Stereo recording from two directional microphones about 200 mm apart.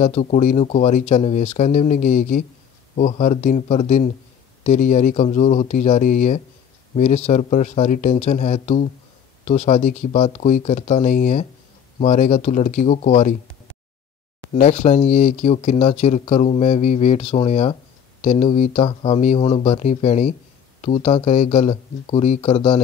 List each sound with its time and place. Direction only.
0.0 s speech: 35° left (ahead or behind)
14.5 s speech: 35° left (ahead or behind)